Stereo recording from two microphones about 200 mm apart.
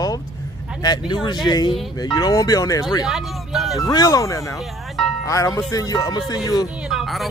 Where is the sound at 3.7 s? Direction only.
20° left (ahead or behind).